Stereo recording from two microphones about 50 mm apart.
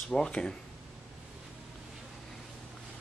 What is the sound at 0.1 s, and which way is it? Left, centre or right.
Speech, centre.